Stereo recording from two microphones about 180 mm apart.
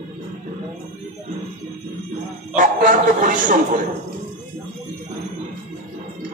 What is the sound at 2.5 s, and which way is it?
Speech, 45° right (ahead or behind).